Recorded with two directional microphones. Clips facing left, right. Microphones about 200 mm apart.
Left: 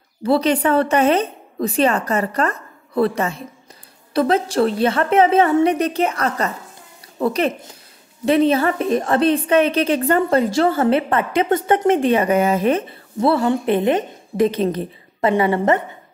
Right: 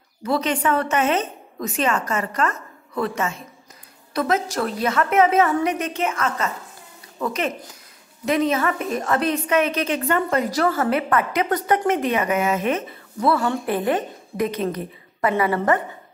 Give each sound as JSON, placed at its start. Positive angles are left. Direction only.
{"t": 0.2, "sound": "a woman's voice", "side_deg": 30}